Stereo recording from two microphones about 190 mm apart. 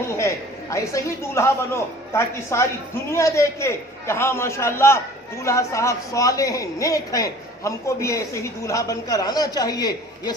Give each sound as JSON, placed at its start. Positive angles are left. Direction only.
{"t": 0.1, "sound": "a man's voice", "side_deg": 15}